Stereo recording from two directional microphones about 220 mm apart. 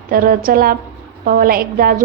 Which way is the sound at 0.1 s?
40° right (ahead or behind).